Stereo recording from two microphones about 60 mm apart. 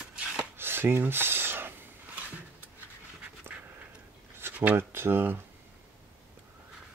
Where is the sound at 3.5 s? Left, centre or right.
Right.